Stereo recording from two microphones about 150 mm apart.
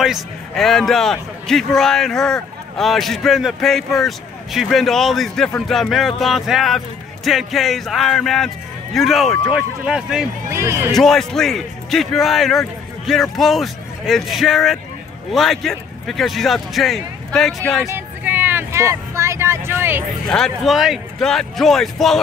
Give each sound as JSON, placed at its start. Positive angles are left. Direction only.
{"t": 0.0, "sound": "a man's voice", "side_deg": 0}
{"t": 10.5, "sound": "speech", "side_deg": -15}
{"t": 11.0, "sound": "a man's voice", "side_deg": 5}
{"t": 17.8, "sound": "vehicle", "side_deg": -15}
{"t": 20.2, "sound": "a man's voice", "side_deg": 5}